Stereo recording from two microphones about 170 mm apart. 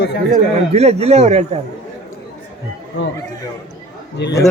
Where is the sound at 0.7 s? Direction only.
40° right (ahead or behind).